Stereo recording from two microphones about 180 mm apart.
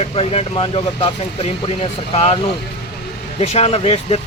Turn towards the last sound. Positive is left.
turn(degrees=35)  # may be behind; listen again after turning